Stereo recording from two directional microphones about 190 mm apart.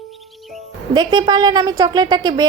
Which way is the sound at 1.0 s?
20° right (ahead or behind).